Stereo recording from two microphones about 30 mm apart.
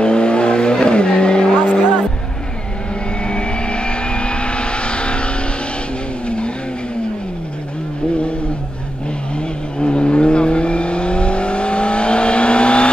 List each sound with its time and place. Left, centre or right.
0.0 s vehicle: left
1.7 s music: left
3.3 s vehicle: left
9.8 s vehicle: left